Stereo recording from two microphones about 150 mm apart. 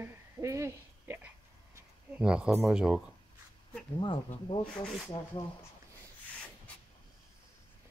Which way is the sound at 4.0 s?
35° left (ahead or behind).